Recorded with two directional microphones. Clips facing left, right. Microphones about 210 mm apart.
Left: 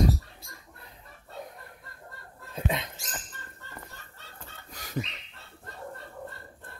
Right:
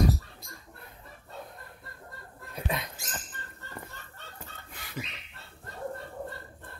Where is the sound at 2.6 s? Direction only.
20° left (ahead or behind).